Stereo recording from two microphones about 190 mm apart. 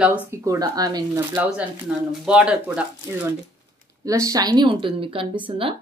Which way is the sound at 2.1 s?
5° right (ahead or behind).